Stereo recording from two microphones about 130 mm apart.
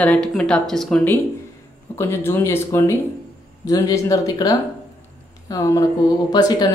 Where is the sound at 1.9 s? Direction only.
20° left (ahead or behind).